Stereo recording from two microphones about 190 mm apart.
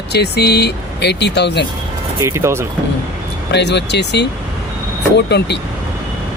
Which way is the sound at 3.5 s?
65° left (ahead or behind).